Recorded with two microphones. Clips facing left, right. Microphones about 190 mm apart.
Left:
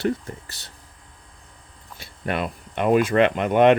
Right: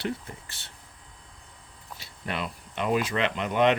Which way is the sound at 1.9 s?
55° left (ahead or behind).